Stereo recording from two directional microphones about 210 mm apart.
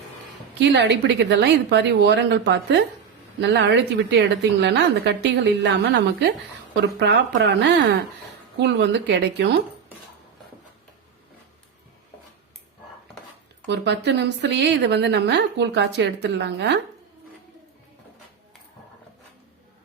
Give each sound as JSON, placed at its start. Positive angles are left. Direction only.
{"t": 0.6, "sound": "speech", "side_deg": -55}
{"t": 13.7, "sound": "speech", "side_deg": -55}